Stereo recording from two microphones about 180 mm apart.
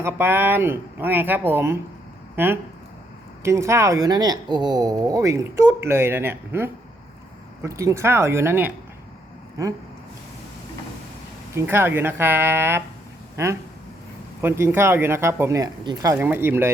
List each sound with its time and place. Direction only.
0.0 s speech: 10° right (ahead or behind)
11.5 s speech: 15° right (ahead or behind)
16.1 s speech: 10° right (ahead or behind)